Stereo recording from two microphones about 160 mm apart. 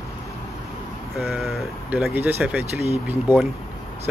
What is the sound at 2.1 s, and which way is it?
Speech, 10° right (ahead or behind).